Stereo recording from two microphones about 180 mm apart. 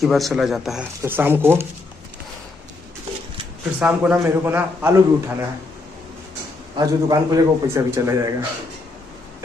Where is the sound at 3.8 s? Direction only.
10° right (ahead or behind).